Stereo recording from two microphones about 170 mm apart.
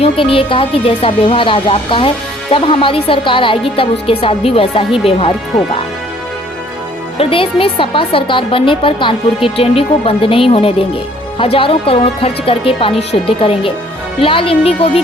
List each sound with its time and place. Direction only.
0.0 s speech: 30° left (ahead or behind)
7.2 s speech: 30° left (ahead or behind)